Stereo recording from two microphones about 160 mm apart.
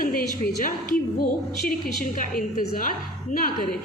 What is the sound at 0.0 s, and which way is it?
Speech, 65° left (ahead or behind).